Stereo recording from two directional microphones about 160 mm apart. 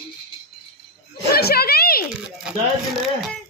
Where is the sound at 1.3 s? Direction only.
75° left (ahead or behind).